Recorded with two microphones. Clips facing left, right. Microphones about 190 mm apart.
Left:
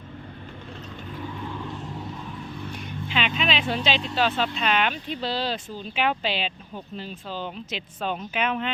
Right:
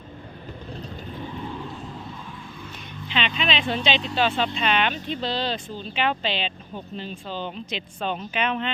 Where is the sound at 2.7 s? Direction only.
5° left (ahead or behind).